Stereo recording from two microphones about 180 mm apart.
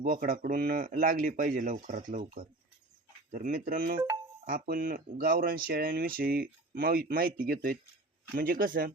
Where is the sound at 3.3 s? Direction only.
50° right (ahead or behind).